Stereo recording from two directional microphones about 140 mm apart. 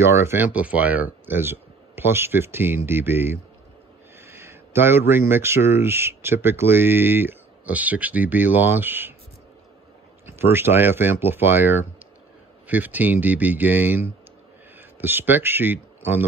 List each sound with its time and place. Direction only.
0.0 s speech: 20° right (ahead or behind)
10.2 s speech: 15° right (ahead or behind)